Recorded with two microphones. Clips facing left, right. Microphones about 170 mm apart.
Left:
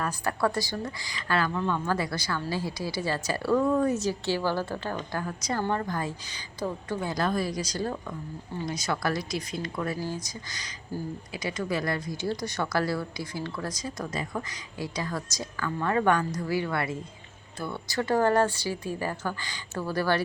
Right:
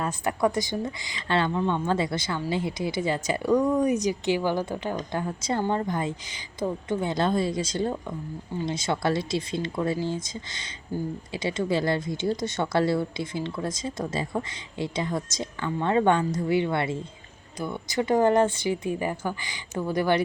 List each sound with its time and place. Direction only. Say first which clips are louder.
0.0 s speech: right 2 dB; 20° right (ahead or behind)